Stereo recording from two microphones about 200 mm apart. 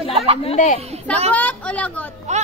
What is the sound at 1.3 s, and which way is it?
Speech, 5° left (ahead or behind).